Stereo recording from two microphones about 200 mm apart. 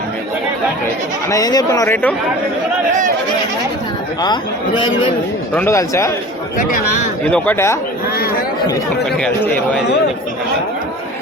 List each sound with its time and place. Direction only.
1.3 s a man's voice: 20° left (ahead or behind)
5.5 s a man's voice: 15° left (ahead or behind)
7.3 s a man's voice: 5° left (ahead or behind)
9.1 s a man's voice: 5° left (ahead or behind)